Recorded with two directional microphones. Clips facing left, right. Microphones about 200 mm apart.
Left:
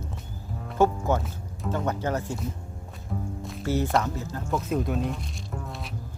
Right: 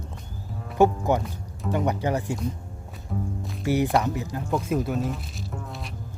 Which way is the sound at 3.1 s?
Centre (ahead or behind).